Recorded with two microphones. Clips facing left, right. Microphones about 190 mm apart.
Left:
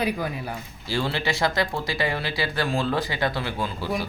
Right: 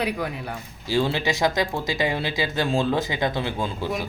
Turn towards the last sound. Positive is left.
turn(degrees=-20)  # may be behind; listen again after turning